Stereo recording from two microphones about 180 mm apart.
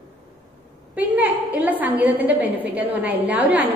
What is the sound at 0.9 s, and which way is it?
A woman's voice, 10° right (ahead or behind).